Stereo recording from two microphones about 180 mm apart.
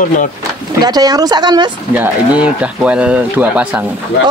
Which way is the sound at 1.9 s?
10° right (ahead or behind).